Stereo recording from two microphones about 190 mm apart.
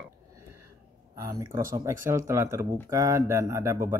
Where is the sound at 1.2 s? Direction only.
15° right (ahead or behind).